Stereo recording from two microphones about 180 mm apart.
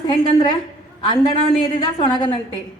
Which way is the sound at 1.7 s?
25° left (ahead or behind).